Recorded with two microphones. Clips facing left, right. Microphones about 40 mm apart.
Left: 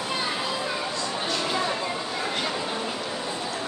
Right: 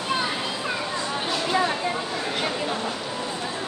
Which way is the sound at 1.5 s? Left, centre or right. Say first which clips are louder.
Right 6 dB; centre.